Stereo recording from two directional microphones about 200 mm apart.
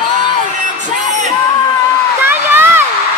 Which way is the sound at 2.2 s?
10° right (ahead or behind).